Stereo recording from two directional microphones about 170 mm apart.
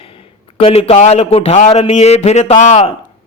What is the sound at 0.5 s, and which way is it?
A man's voice, 35° left (ahead or behind).